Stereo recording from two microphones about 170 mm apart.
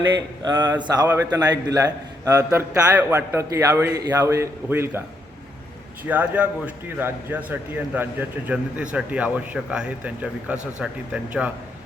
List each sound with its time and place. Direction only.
0.2 s a man's voice: 25° right (ahead or behind)
6.1 s a man's voice: 10° right (ahead or behind)